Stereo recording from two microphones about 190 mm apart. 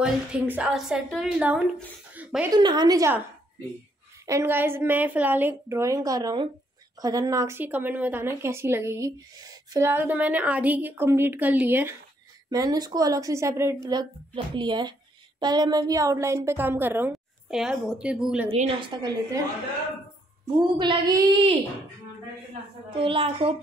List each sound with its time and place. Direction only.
0.0 s a woman's voice: 5° right (ahead or behind)
2.1 s a sound: 10° right (ahead or behind)
2.5 s a woman's voice: 20° right (ahead or behind)
4.3 s a woman's voice: 15° right (ahead or behind)
18.5 s a woman's voice: 25° right (ahead or behind)
20.6 s a woman's voice: 25° right (ahead or behind)
22.9 s a woman's voice: 30° right (ahead or behind)